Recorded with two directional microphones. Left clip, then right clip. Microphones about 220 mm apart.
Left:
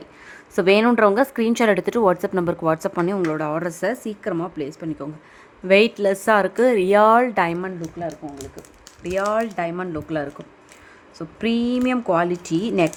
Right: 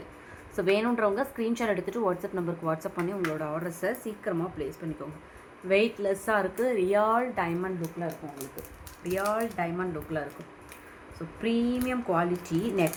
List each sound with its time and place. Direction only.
0.5 s a woman's voice: 55° left (ahead or behind)
7.8 s speech: 15° left (ahead or behind)
9.0 s speech: 55° left (ahead or behind)
11.3 s speech: 55° left (ahead or behind)